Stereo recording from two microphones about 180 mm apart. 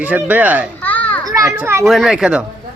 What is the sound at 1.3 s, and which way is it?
Children playing, 20° right (ahead or behind).